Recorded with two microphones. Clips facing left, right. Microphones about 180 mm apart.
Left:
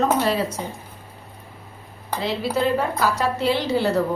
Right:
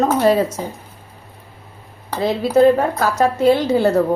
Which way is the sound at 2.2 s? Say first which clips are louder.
Right 9 dB; 45° right (ahead or behind).